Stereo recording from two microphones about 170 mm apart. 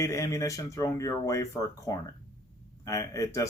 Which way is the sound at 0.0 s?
20° left (ahead or behind).